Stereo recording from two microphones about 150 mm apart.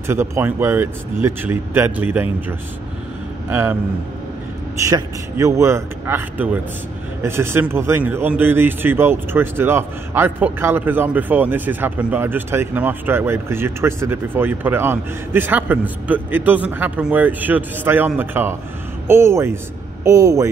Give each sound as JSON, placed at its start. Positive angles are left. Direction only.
{"t": 0.0, "sound": "speech", "side_deg": -15}
{"t": 3.4, "sound": "a man's voice", "side_deg": -15}
{"t": 4.7, "sound": "speech", "side_deg": -20}